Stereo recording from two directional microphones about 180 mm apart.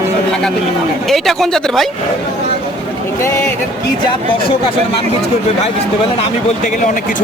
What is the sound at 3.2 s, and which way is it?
Speech, 15° left (ahead or behind).